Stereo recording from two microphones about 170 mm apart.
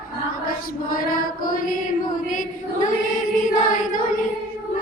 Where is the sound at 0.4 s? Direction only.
55° left (ahead or behind).